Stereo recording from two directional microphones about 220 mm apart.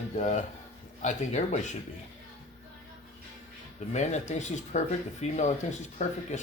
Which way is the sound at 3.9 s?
30° left (ahead or behind).